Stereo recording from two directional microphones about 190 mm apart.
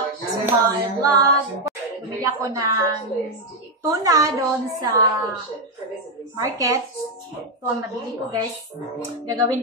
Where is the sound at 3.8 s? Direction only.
20° right (ahead or behind).